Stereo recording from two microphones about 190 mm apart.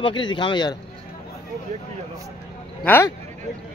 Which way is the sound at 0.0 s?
25° left (ahead or behind).